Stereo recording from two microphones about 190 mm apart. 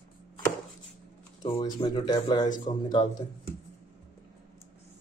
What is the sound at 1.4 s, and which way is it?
Speech, 25° left (ahead or behind).